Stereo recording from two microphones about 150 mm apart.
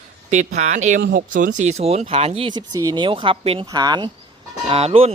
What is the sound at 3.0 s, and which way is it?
Speech, 35° right (ahead or behind).